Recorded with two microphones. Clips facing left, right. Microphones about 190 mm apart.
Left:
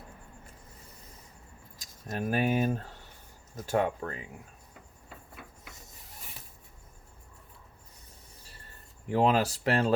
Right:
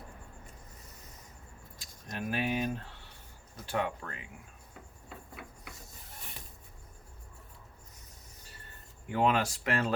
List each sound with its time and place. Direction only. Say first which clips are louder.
2.1 s speech: left 5 dB; 45° left (ahead or behind)
9.0 s speech: left 3 dB; 35° left (ahead or behind)